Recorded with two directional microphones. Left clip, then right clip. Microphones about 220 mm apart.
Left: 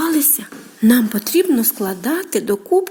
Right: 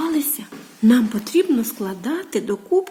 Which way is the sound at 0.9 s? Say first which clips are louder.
Left 2 dB; 25° left (ahead or behind).